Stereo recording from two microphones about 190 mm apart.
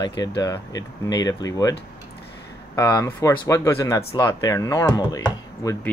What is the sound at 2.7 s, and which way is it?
Speech, 15° left (ahead or behind).